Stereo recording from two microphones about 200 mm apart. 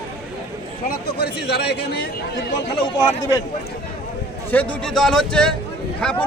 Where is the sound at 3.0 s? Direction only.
20° left (ahead or behind).